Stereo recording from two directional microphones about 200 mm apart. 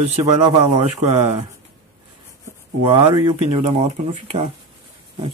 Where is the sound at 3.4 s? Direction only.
30° right (ahead or behind).